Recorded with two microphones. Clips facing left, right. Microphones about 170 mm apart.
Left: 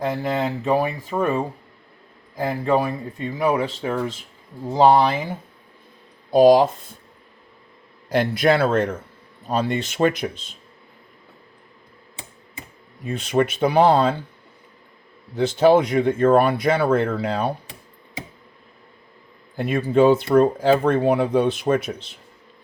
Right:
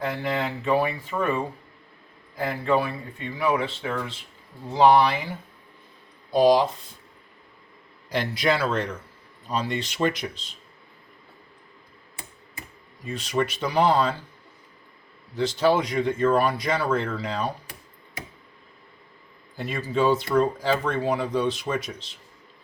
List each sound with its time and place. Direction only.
0.0 s speech: 40° left (ahead or behind)
6.3 s speech: 50° left (ahead or behind)
8.1 s speech: 50° left (ahead or behind)
13.1 s speech: 55° left (ahead or behind)
15.4 s speech: 55° left (ahead or behind)
19.5 s speech: 60° left (ahead or behind)